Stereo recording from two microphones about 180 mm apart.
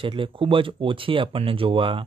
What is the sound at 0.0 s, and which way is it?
Speech, 30° right (ahead or behind).